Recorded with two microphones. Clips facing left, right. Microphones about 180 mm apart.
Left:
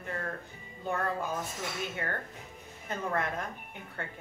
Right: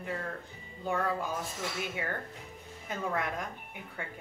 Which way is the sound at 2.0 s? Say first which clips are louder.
Even; 10° right (ahead or behind).